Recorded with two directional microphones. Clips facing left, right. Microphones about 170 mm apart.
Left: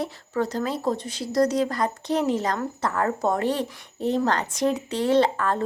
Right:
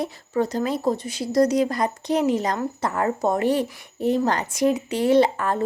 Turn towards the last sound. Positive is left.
turn(degrees=-15)  # may be behind; listen again after turning